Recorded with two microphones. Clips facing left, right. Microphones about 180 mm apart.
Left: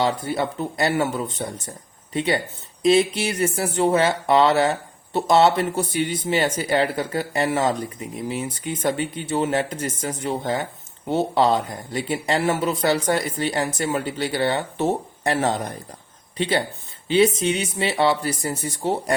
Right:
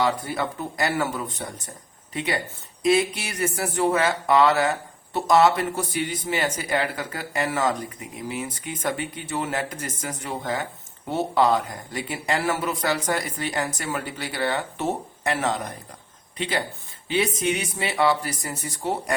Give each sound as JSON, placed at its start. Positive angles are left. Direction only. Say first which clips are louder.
{"t": 0.0, "sound": "speech", "louder": "left 2 dB", "side_deg": 25}